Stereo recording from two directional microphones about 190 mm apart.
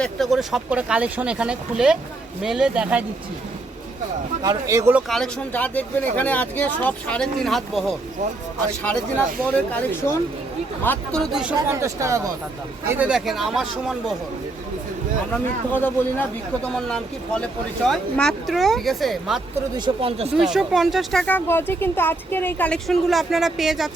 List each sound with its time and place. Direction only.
0.0 s speech: centre (ahead or behind)
4.4 s speech: 15° right (ahead or behind)
5.0 s speech: centre (ahead or behind)
11.7 s speech: 15° right (ahead or behind)
15.3 s speech: 10° left (ahead or behind)
19.7 s speech: 25° right (ahead or behind)
20.4 s speech: centre (ahead or behind)